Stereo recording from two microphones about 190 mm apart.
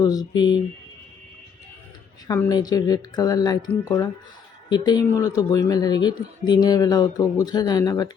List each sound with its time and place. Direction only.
0.0 s speech: 20° left (ahead or behind)
2.2 s speech: 20° left (ahead or behind)